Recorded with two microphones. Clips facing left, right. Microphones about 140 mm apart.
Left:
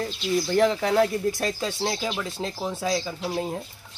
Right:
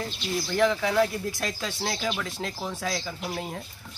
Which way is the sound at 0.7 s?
30° left (ahead or behind).